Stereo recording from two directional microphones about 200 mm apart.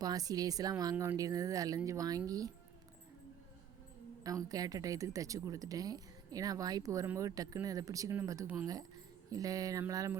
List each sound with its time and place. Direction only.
0.0 s speech: 20° right (ahead or behind)
4.2 s speech: 15° right (ahead or behind)